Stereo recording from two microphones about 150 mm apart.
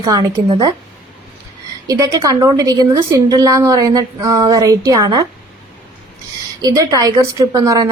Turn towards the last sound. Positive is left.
turn(degrees=-25)  # may be behind; listen again after turning